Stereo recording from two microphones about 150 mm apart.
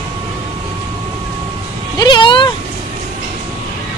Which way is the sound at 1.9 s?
30° left (ahead or behind).